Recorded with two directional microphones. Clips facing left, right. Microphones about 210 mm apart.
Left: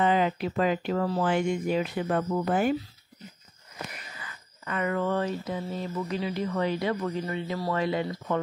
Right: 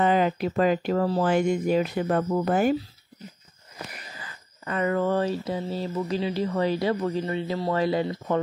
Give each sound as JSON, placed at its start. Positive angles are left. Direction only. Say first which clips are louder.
{"t": 0.0, "sound": "mantra", "louder": "right 2 dB", "side_deg": -45}
{"t": 4.1, "sound": "mantra", "louder": "right 2 dB", "side_deg": -35}